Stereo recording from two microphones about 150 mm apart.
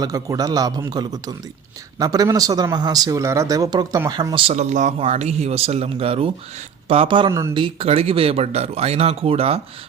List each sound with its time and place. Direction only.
0.0 s speech: 25° right (ahead or behind)
4.4 s speech: 50° right (ahead or behind)
7.3 s speech: 20° right (ahead or behind)
7.5 s speech: 35° right (ahead or behind)